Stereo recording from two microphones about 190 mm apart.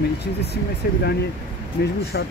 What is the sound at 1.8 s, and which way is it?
Speech, 55° left (ahead or behind).